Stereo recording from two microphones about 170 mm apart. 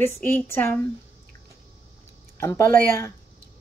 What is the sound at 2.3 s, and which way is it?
Speech, 15° left (ahead or behind).